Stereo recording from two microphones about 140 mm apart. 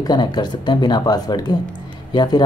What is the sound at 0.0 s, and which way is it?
Speech, 30° left (ahead or behind).